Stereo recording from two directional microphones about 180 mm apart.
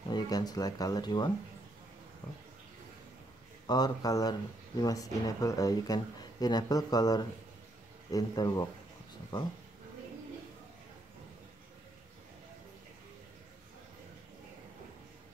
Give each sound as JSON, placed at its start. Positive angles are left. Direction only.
{"t": 0.1, "sound": "speech", "side_deg": 20}
{"t": 3.6, "sound": "speech", "side_deg": 20}